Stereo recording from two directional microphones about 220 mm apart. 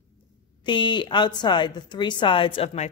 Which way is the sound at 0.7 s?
20° left (ahead or behind).